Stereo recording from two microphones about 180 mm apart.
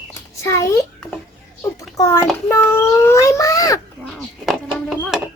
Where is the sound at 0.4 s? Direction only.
15° left (ahead or behind).